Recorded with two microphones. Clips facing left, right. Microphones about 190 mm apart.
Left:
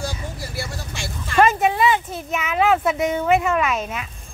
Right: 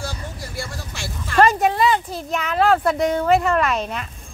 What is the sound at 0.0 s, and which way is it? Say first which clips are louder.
Vehicle: left 2 dB; 10° left (ahead or behind).